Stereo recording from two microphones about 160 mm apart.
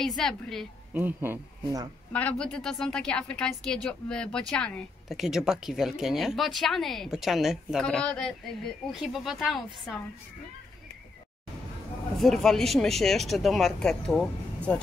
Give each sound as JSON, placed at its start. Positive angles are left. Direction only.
{"t": 0.0, "sound": "a woman's voice", "side_deg": 0}
{"t": 0.9, "sound": "speech", "side_deg": -10}
{"t": 2.1, "sound": "a woman's voice", "side_deg": 5}
{"t": 12.2, "sound": "a woman's voice", "side_deg": 0}